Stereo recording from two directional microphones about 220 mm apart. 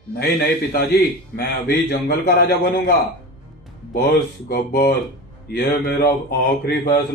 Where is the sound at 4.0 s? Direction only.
45° left (ahead or behind).